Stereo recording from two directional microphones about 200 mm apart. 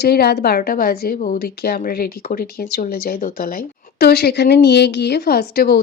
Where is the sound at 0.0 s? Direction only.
55° left (ahead or behind).